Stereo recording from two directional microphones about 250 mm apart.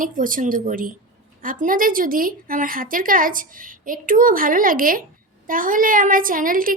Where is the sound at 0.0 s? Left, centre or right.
Right.